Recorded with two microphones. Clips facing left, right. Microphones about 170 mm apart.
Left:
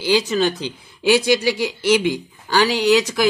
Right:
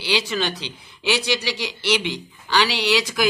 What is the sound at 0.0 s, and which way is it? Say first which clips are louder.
Speech: left 6 dB; 45° left (ahead or behind).